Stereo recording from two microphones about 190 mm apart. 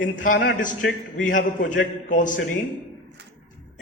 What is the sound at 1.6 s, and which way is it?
Speech, 40° left (ahead or behind).